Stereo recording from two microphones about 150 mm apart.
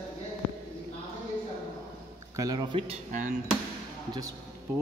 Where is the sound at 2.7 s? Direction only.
40° right (ahead or behind).